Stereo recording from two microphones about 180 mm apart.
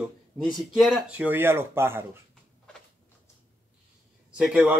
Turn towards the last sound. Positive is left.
turn(degrees=-5)  # may be behind; listen again after turning